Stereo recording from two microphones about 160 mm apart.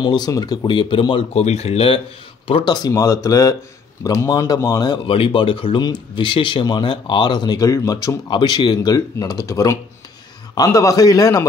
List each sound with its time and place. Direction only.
0.0 s speech: 25° left (ahead or behind)